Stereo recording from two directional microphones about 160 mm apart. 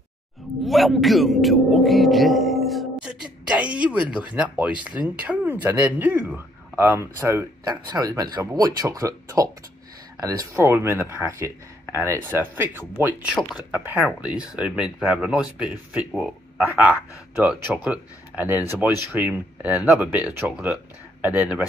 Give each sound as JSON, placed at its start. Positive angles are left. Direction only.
{"t": 0.7, "sound": "speech", "side_deg": 0}
{"t": 17.4, "sound": "speech", "side_deg": -10}